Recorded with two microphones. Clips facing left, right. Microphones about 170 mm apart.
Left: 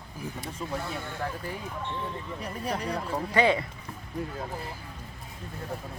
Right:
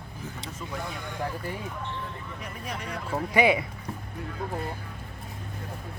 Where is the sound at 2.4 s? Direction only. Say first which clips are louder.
Left 6 dB; 35° left (ahead or behind).